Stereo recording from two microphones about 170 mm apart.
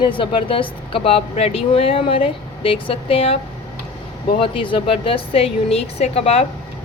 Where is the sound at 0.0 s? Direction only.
30° left (ahead or behind).